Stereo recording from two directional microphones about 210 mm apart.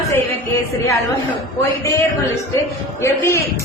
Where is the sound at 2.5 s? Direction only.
15° left (ahead or behind).